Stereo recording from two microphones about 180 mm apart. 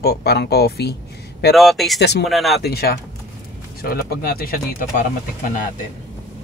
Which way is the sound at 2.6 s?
60° left (ahead or behind).